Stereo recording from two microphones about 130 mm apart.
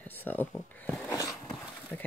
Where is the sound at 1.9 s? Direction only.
10° left (ahead or behind).